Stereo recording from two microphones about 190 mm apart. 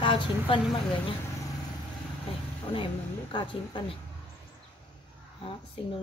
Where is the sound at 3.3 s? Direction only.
25° left (ahead or behind).